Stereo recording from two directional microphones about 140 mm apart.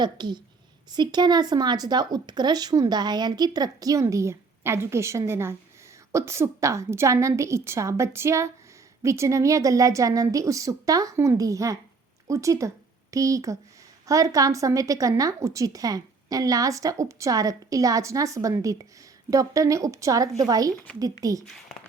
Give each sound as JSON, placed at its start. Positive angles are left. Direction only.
{"t": 0.0, "sound": "a woman's voice", "side_deg": -30}